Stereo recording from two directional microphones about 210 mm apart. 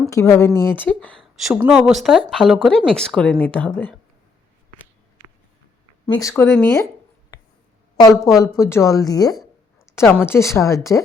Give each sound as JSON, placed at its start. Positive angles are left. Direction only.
{"t": 0.1, "sound": "speech", "side_deg": 15}
{"t": 6.1, "sound": "speech", "side_deg": 15}
{"t": 8.2, "sound": "speech", "side_deg": 15}